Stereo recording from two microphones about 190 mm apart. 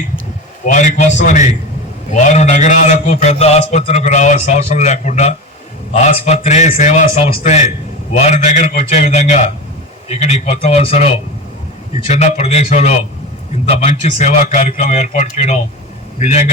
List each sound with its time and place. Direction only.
0.7 s a man's voice: 40° left (ahead or behind)